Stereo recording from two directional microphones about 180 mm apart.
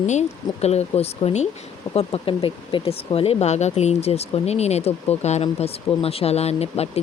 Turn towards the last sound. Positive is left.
turn(degrees=35)  # may be behind; listen again after turning